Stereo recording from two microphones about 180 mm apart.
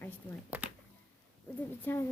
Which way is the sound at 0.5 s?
10° right (ahead or behind).